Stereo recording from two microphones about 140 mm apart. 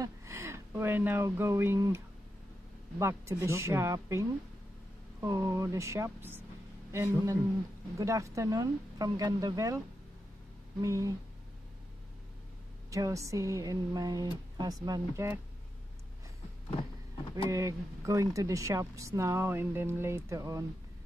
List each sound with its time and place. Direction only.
0.0 s speech: 20° right (ahead or behind)
3.0 s speech: 20° right (ahead or behind)
10.8 s speech: 25° right (ahead or behind)
12.9 s speech: 25° right (ahead or behind)
17.5 s speech: 25° right (ahead or behind)